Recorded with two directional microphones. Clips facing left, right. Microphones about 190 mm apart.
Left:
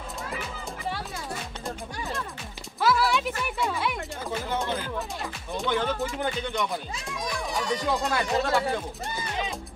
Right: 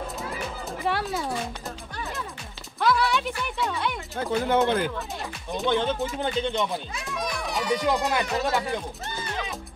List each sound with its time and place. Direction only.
0.8 s speech: 70° right (ahead or behind)
2.8 s speech: centre (ahead or behind)
4.5 s a child's voice: 60° right (ahead or behind)
5.7 s music: 25° right (ahead or behind)
7.0 s a child's voice: 65° right (ahead or behind)
7.8 s music: 20° right (ahead or behind)